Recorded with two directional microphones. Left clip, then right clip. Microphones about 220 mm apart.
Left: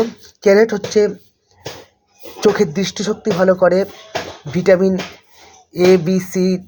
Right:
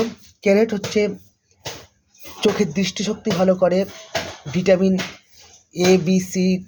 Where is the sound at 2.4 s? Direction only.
10° left (ahead or behind).